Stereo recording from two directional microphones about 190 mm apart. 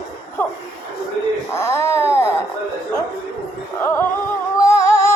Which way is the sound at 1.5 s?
15° left (ahead or behind).